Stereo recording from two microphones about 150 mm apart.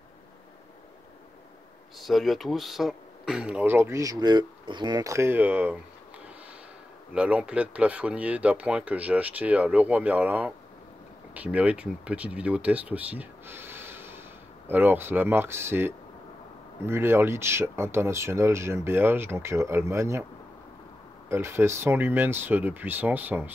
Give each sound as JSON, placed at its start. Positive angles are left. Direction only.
{"t": 2.0, "sound": "speech", "side_deg": 0}
{"t": 7.2, "sound": "speech", "side_deg": -10}
{"t": 21.3, "sound": "speech", "side_deg": -15}